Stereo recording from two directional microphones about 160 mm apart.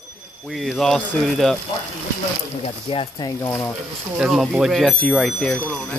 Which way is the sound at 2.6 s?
35° left (ahead or behind).